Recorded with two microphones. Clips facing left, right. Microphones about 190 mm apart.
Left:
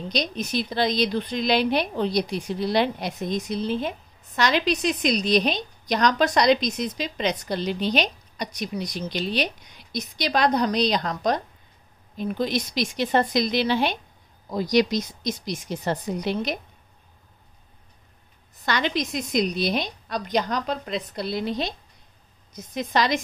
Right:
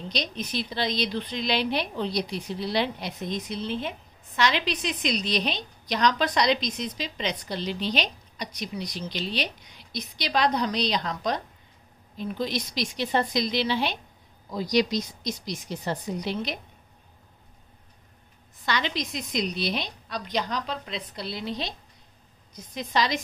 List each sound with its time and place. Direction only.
0.1 s a woman's voice: 45° left (ahead or behind)
18.7 s a woman's voice: 50° left (ahead or behind)
22.8 s a woman's voice: 55° left (ahead or behind)